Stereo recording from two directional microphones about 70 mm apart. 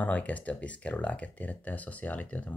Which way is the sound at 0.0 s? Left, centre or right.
Left.